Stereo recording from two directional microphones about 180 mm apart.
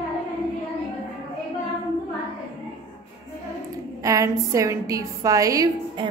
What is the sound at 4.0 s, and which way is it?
A woman's voice, 20° right (ahead or behind).